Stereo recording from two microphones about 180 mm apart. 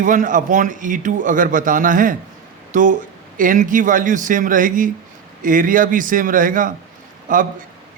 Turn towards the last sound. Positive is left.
turn(degrees=-50)  # may be behind; listen again after turning